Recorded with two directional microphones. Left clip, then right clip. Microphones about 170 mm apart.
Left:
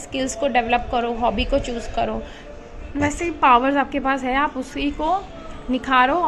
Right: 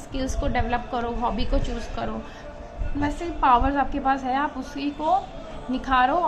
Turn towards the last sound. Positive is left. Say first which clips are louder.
# left 4 dB
turn(degrees=25)  # may be behind; listen again after turning